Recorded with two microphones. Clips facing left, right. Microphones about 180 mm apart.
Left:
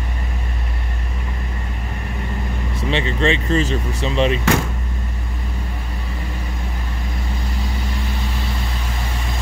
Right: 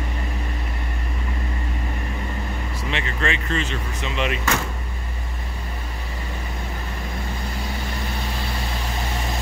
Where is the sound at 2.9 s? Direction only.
30° left (ahead or behind).